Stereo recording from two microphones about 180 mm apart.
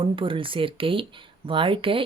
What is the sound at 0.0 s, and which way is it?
Speech, 30° right (ahead or behind).